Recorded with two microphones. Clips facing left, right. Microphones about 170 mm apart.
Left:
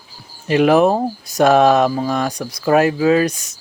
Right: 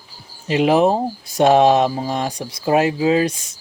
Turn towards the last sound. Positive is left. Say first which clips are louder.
# left 2 dB
turn(degrees=-25)  # may be behind; listen again after turning